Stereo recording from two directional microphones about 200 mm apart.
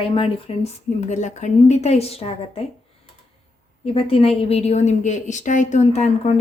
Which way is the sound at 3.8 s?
30° left (ahead or behind).